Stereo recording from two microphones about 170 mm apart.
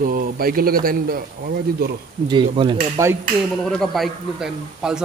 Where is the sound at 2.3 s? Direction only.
30° right (ahead or behind).